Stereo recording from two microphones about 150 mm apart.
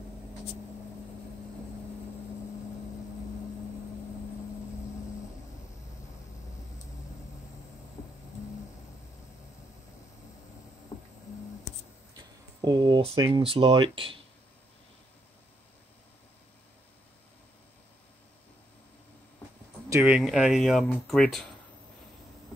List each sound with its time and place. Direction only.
12.6 s speech: 30° right (ahead or behind)
19.9 s speech: 10° right (ahead or behind)